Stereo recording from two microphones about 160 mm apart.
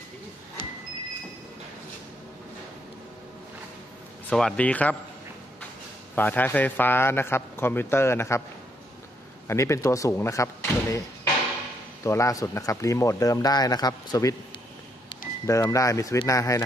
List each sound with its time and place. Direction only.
4.3 s a man's voice: 5° left (ahead or behind)
6.1 s a man's voice: 10° left (ahead or behind)
9.5 s speech: 20° left (ahead or behind)
12.0 s speech: 20° left (ahead or behind)